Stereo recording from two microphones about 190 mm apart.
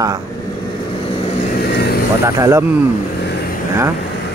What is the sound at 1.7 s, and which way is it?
Vehicle, 60° left (ahead or behind).